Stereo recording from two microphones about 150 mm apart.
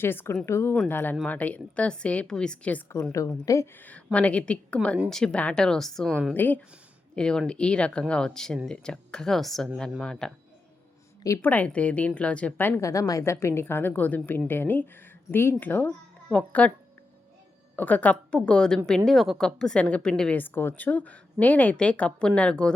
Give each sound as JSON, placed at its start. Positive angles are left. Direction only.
{"t": 0.0, "sound": "a woman's voice", "side_deg": 15}
{"t": 3.0, "sound": "a woman's voice", "side_deg": 20}
{"t": 6.3, "sound": "a woman's voice", "side_deg": 10}
{"t": 11.4, "sound": "a woman's voice", "side_deg": 10}
{"t": 17.7, "sound": "a woman's voice", "side_deg": 10}